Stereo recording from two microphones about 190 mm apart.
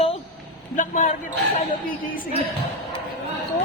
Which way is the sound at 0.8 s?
40° left (ahead or behind).